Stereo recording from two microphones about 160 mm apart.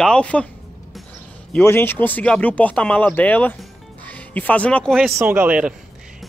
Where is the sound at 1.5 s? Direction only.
15° left (ahead or behind).